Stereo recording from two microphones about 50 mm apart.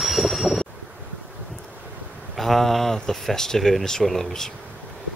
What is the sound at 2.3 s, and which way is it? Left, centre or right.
Speech, centre.